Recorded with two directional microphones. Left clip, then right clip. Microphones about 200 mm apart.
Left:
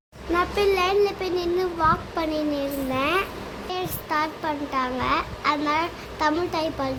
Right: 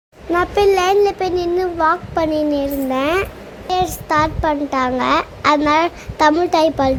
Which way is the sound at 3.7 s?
30° right (ahead or behind).